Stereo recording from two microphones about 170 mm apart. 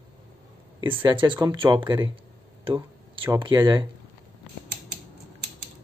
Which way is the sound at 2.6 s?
30° right (ahead or behind).